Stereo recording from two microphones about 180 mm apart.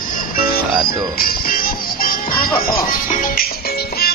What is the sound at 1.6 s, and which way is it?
Music, 55° left (ahead or behind).